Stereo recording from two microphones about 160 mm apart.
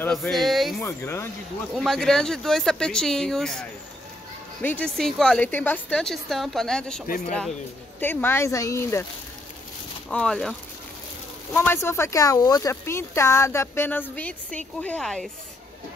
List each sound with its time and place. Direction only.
0.0 s a woman's voice: 5° left (ahead or behind)
0.7 s speech: 15° left (ahead or behind)
1.8 s a woman's voice: 5° left (ahead or behind); by 9.0 s 20° left (ahead or behind)
10.0 s a woman's voice: 5° left (ahead or behind)
11.5 s a woman's voice: 15° left (ahead or behind)